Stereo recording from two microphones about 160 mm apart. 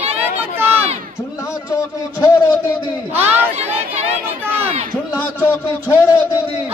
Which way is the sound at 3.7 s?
40° right (ahead or behind).